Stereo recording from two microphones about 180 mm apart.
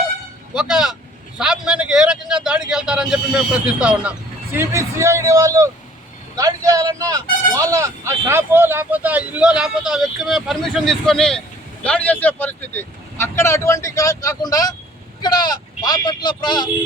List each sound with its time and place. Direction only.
0.5 s speech: 5° right (ahead or behind)
1.4 s a sound: 5° right (ahead or behind)
4.5 s speech: 15° right (ahead or behind); by 16.6 s 25° left (ahead or behind)